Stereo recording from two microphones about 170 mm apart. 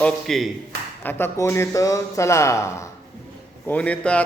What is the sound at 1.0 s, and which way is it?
Speech, 15° left (ahead or behind).